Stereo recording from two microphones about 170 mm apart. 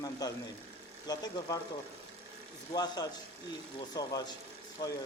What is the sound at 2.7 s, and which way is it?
Speech, 25° left (ahead or behind).